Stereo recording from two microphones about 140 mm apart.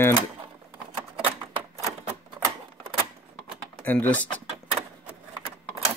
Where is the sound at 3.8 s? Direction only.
10° left (ahead or behind).